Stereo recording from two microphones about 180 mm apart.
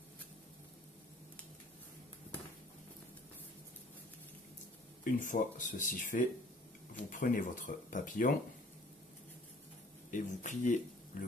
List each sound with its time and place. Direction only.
5.0 s speech: 45° left (ahead or behind)
10.1 s speech: 45° left (ahead or behind)